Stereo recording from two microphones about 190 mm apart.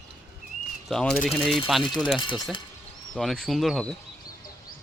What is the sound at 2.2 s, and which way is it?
Speech, 25° left (ahead or behind).